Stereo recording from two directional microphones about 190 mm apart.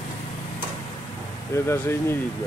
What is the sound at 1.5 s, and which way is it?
Speech, 10° left (ahead or behind).